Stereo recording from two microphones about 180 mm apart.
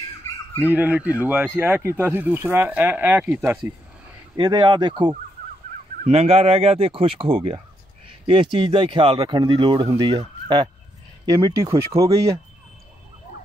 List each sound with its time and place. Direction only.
0.7 s speech: 10° right (ahead or behind)
4.4 s speech: 25° right (ahead or behind)